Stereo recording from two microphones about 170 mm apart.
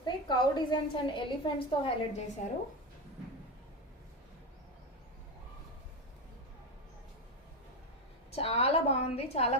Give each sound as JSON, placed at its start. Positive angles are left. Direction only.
{"t": 0.0, "sound": "a woman's voice", "side_deg": 25}
{"t": 8.3, "sound": "a woman's voice", "side_deg": 35}